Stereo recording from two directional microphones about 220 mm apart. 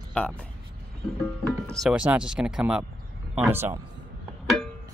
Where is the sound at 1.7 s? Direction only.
Centre (ahead or behind).